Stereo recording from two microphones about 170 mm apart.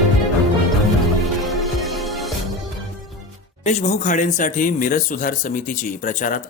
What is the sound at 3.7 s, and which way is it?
Speech, 45° left (ahead or behind).